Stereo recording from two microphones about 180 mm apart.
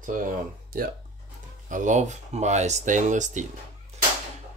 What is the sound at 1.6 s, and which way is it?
Speech, 45° right (ahead or behind).